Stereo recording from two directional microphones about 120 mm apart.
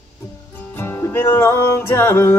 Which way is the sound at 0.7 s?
20° left (ahead or behind).